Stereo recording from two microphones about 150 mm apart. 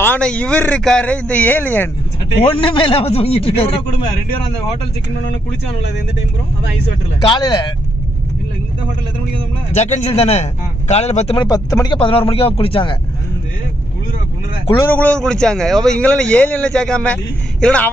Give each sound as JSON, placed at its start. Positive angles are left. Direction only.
{"t": 0.0, "sound": "a man's voice", "side_deg": 10}
{"t": 2.6, "sound": "speech", "side_deg": 35}
{"t": 7.2, "sound": "speech", "side_deg": 30}
{"t": 9.8, "sound": "a man's voice", "side_deg": 50}
{"t": 11.3, "sound": "speech", "side_deg": 25}
{"t": 14.8, "sound": "a man's voice", "side_deg": 10}